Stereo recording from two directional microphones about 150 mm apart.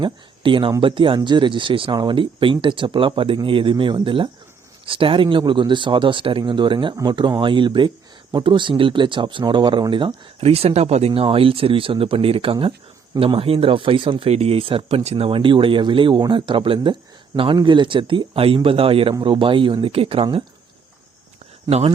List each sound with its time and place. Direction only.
0.0 s speech: 35° right (ahead or behind)
21.7 s speech: 45° right (ahead or behind)